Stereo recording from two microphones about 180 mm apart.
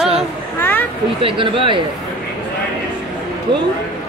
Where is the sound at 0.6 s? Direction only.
10° left (ahead or behind).